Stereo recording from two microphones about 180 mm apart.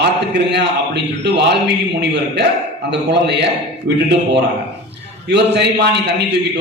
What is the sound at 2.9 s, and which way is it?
Speech, 70° right (ahead or behind).